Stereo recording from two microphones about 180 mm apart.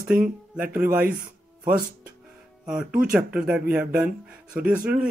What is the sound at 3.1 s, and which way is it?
Speech, 5° right (ahead or behind).